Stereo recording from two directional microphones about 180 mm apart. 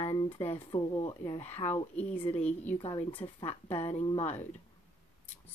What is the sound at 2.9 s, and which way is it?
Speech, 30° left (ahead or behind).